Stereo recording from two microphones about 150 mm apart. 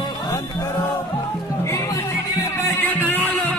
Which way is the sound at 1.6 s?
20° left (ahead or behind).